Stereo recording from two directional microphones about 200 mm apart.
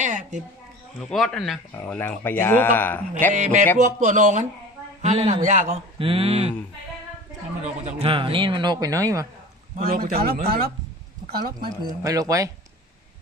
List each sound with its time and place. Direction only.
0.0 s a sound: 40° right (ahead or behind)
0.9 s speech: centre (ahead or behind)
3.7 s speech: 40° right (ahead or behind)
5.9 s speech: 30° right (ahead or behind)
7.6 s speech: 30° right (ahead or behind); by 9.3 s 15° right (ahead or behind)
9.8 s speech: 45° right (ahead or behind)
12.0 s speech: 15° right (ahead or behind)